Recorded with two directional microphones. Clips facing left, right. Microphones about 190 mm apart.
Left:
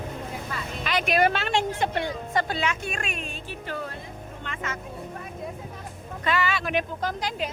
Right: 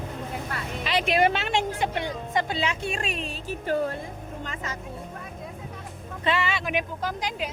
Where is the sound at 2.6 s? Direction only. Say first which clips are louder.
Right 1 dB; 30° right (ahead or behind).